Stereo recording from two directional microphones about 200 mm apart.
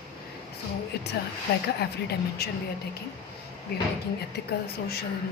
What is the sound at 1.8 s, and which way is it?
Speech, 55° left (ahead or behind).